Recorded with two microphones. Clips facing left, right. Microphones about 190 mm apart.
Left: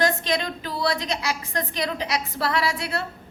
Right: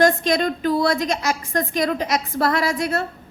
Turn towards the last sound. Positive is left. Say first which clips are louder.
# right 4 dB
turn(degrees=-45)  # may be behind; listen again after turning